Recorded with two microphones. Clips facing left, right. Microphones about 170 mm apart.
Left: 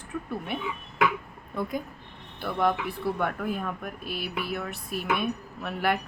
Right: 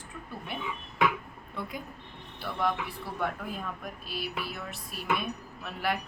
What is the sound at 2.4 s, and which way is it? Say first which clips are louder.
Speech: left 5 dB; 55° left (ahead or behind).